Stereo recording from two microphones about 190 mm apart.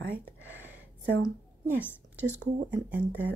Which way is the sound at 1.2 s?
10° right (ahead or behind).